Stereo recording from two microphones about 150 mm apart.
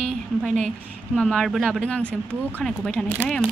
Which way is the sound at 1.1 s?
5° left (ahead or behind).